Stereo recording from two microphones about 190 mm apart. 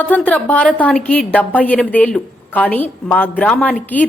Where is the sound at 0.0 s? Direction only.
10° left (ahead or behind).